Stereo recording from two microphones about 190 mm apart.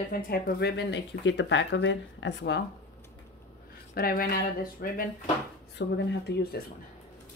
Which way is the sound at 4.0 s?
50° left (ahead or behind).